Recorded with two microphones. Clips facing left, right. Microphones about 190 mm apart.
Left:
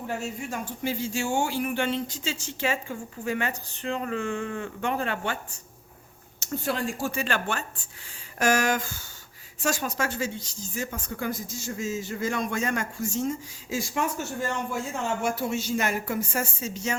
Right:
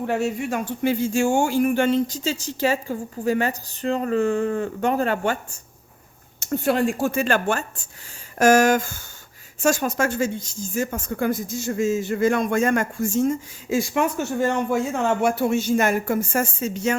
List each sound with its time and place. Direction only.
0.0 s speech: 70° right (ahead or behind); by 5.5 s 45° right (ahead or behind)
6.4 s speech: 60° right (ahead or behind)